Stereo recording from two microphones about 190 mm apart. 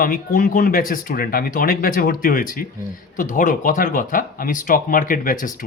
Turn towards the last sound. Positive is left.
turn(degrees=45)  # may be behind; listen again after turning